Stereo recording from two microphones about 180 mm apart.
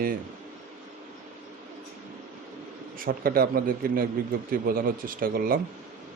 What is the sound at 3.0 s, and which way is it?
Speech, 55° right (ahead or behind).